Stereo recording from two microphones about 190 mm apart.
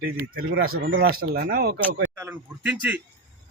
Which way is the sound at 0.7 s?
80° right.